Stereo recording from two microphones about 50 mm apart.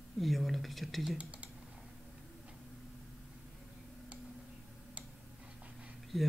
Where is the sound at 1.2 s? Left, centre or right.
Right.